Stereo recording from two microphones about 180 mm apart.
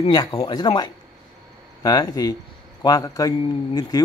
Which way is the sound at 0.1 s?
25° left (ahead or behind).